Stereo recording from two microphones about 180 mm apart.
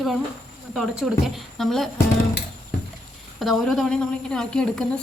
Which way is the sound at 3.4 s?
Centre (ahead or behind).